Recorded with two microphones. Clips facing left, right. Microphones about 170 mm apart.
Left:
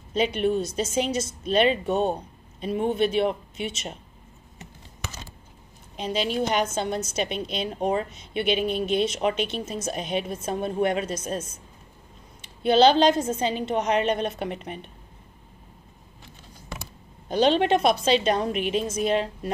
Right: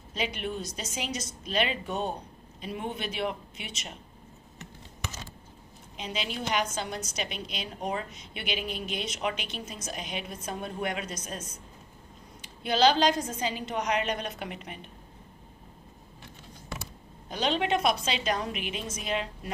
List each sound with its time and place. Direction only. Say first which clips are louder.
0.4 s a woman's voice: left 11 dB; 25° left (ahead or behind)
3.0 s a woman's voice: left 10 dB; 30° left (ahead or behind)
5.9 s a woman's voice: left 9 dB; 35° left (ahead or behind)
17.3 s a woman's voice: left 8 dB; 30° left (ahead or behind)